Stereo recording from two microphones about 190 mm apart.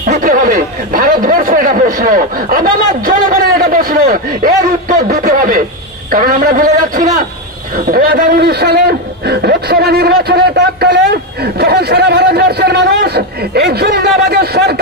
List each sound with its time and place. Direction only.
0.0 s speech: 45° right (ahead or behind)